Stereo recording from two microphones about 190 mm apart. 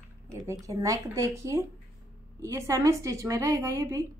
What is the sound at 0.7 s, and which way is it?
A woman's voice, 15° right (ahead or behind).